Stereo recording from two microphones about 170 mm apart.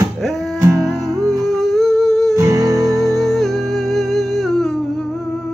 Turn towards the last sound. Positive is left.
turn(degrees=0)  # may be behind; listen again after turning